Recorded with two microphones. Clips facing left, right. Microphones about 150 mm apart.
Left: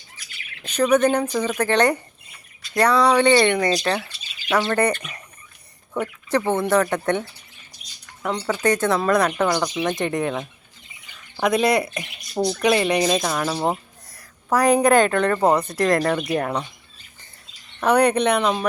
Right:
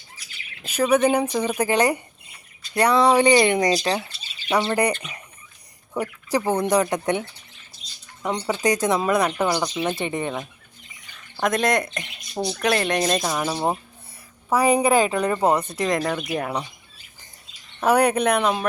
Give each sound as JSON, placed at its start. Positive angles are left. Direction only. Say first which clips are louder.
{"t": 0.6, "sound": "speech", "louder": "left 1 dB", "side_deg": -5}
{"t": 2.9, "sound": "speech", "louder": "right 1 dB", "side_deg": -25}
{"t": 3.2, "sound": "speech", "louder": "even", "side_deg": -15}
{"t": 10.0, "sound": "speech", "louder": "left 3 dB", "side_deg": 0}
{"t": 17.7, "sound": "speech", "louder": "left 1 dB", "side_deg": -5}